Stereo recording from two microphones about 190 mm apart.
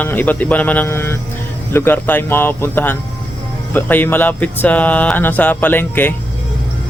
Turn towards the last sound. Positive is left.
turn(degrees=10)  # may be behind; listen again after turning